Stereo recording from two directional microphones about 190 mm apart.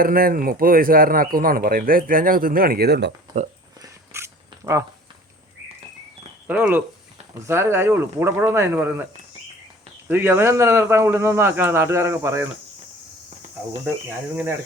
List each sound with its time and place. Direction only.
0.0 s speech: 50° right (ahead or behind)
3.3 s speech: 20° right (ahead or behind)
3.8 s a sound: 15° right (ahead or behind)
6.5 s speech: 10° right (ahead or behind)
10.1 s speech: 10° right (ahead or behind)